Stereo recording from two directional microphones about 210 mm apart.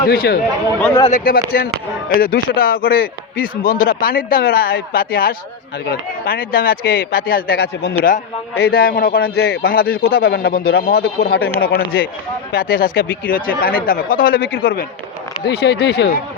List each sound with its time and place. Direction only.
0.1 s speech: 45° left (ahead or behind)